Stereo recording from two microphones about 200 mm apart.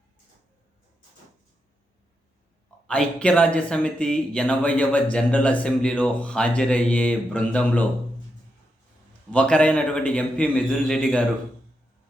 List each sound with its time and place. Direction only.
2.8 s speech: 5° left (ahead or behind)
9.3 s speech: 5° left (ahead or behind)